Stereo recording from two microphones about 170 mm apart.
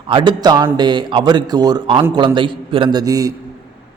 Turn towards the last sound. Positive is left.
turn(degrees=-20)  # may be behind; listen again after turning